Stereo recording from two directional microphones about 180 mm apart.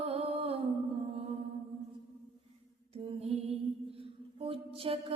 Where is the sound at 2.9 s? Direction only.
35° right (ahead or behind).